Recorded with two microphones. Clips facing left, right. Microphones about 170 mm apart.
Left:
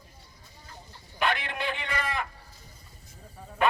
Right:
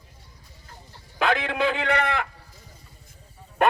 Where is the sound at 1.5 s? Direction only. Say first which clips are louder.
Right 9 dB; 80° right.